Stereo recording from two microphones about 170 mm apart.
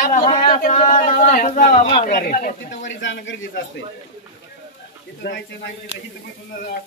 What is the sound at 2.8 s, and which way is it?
Speech, 90° left.